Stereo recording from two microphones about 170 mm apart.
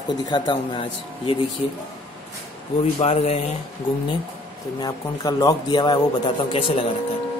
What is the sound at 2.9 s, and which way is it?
Speech, 35° left (ahead or behind).